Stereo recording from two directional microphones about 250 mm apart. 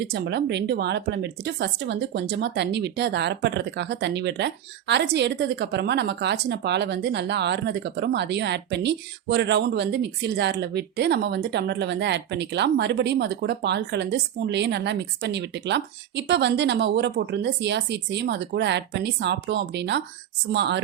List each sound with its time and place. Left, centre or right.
0.0 s speech: right